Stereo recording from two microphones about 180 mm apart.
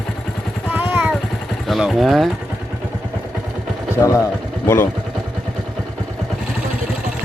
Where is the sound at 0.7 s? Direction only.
10° right (ahead or behind).